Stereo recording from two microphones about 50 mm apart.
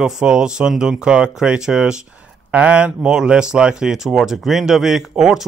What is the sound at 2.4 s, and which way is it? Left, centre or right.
Speech, right.